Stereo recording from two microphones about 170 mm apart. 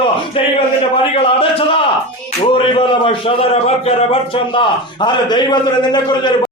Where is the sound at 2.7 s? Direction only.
30° left (ahead or behind).